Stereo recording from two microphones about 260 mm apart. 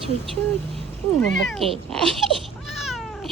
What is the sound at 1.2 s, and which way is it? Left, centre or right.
Cat, centre.